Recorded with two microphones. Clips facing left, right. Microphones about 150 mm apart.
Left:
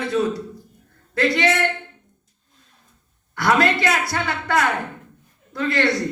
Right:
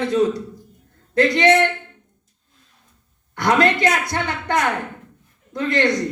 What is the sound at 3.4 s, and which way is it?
A woman's voice, 20° right (ahead or behind).